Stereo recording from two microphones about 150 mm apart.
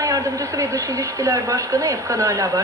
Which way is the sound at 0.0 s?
20° right (ahead or behind).